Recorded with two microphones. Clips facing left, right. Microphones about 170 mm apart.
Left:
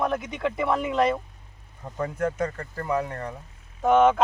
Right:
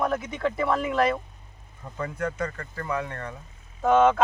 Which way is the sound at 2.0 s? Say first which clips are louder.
Left 3 dB; 45° left (ahead or behind).